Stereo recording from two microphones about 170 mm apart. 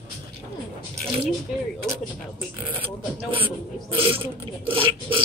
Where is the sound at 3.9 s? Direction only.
30° right (ahead or behind).